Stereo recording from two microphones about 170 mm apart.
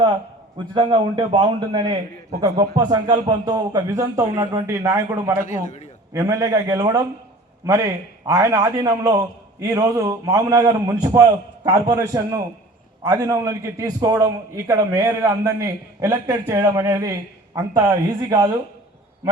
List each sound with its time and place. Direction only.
0.7 s a man's voice: 30° right (ahead or behind)